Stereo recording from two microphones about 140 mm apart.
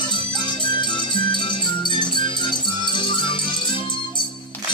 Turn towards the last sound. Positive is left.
turn(degrees=35)  # may be behind; listen again after turning